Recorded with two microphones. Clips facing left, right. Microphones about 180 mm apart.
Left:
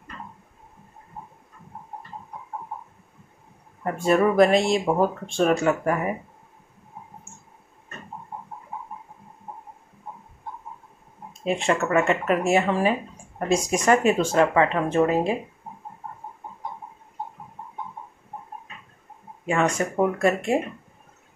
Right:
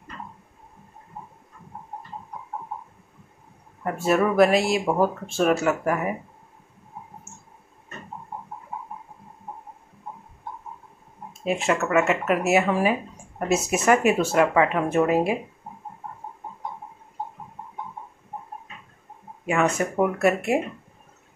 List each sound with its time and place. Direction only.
3.8 s speech: 5° right (ahead or behind)
11.4 s speech: 5° right (ahead or behind)
19.4 s speech: 5° right (ahead or behind)